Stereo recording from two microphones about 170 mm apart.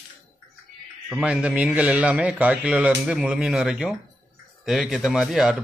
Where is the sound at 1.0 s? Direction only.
5° right (ahead or behind).